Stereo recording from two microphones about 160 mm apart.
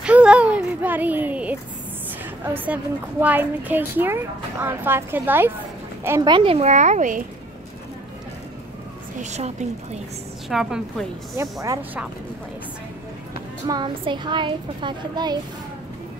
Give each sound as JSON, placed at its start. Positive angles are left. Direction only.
{"t": 0.0, "sound": "a sound", "side_deg": -5}
{"t": 2.4, "sound": "a woman's voice", "side_deg": -10}
{"t": 6.3, "sound": "speech", "side_deg": -35}
{"t": 9.2, "sound": "speech", "side_deg": -45}
{"t": 10.5, "sound": "a woman's voice", "side_deg": -5}
{"t": 13.7, "sound": "a child's voice", "side_deg": -25}